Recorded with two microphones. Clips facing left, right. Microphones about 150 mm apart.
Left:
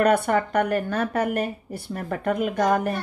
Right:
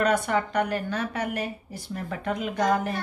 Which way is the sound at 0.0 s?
60° left (ahead or behind).